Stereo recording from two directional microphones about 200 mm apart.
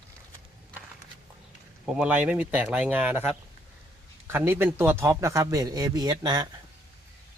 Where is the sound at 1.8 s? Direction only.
5° right (ahead or behind); by 6.4 s 20° right (ahead or behind).